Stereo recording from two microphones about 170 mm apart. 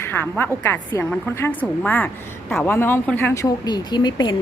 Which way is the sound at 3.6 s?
25° left (ahead or behind).